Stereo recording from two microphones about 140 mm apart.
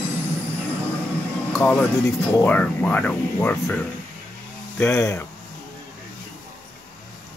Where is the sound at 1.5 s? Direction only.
10° left (ahead or behind).